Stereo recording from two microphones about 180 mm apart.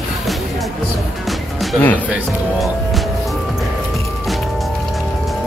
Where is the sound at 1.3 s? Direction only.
Centre (ahead or behind).